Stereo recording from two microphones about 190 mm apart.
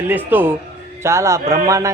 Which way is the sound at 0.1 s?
10° right (ahead or behind).